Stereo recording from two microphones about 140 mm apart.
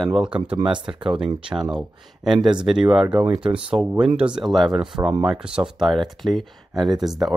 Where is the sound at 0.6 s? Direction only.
35° right (ahead or behind).